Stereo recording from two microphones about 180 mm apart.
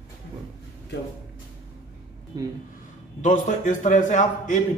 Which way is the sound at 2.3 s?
20° right (ahead or behind).